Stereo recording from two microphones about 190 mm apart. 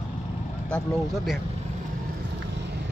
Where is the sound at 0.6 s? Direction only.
Centre (ahead or behind).